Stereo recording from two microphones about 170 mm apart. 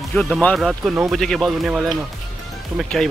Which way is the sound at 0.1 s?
5° left (ahead or behind).